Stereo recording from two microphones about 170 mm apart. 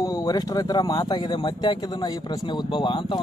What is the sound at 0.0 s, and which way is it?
Speech, 20° left (ahead or behind).